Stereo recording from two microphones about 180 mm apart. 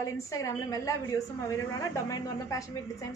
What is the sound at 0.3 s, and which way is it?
A man's voice, 15° left (ahead or behind).